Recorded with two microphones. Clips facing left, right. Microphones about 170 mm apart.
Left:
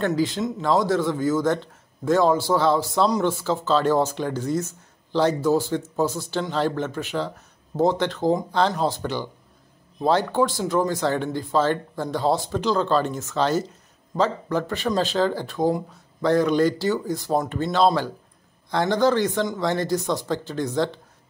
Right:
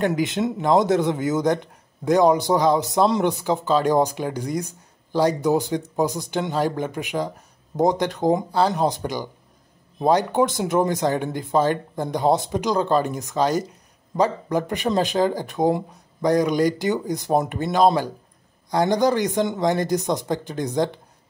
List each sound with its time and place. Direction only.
0.0 s speech: 15° right (ahead or behind)